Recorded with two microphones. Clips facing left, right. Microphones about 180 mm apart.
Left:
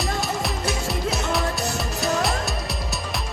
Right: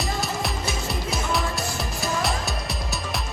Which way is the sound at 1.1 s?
Centre (ahead or behind).